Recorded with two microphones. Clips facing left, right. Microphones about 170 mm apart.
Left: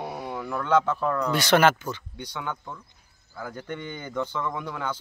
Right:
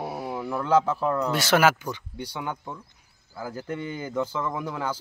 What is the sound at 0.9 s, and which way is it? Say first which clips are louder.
A man's voice: even; 10° right (ahead or behind).